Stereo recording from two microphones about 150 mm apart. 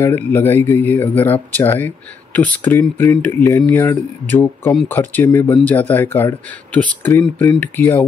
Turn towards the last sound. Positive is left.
turn(degrees=10)  # may be behind; listen again after turning